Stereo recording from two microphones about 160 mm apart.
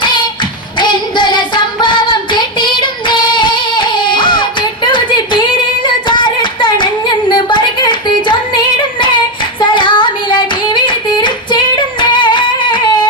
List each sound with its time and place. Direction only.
0.0 s singing: 30° left (ahead or behind)
0.8 s child singing: 30° left (ahead or behind)
5.8 s a sound: 30° left (ahead or behind)